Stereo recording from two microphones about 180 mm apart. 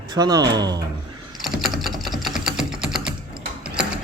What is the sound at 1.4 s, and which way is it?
Typing, centre (ahead or behind).